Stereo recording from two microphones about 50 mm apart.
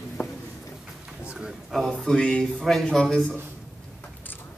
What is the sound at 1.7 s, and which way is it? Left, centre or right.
A man's voice, centre.